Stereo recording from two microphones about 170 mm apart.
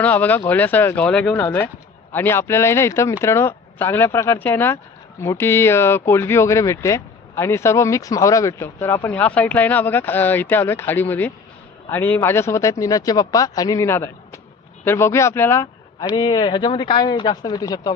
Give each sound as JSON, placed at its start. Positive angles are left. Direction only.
{"t": 0.0, "sound": "speech", "side_deg": 10}